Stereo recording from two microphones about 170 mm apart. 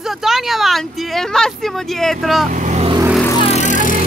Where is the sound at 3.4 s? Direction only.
40° left (ahead or behind).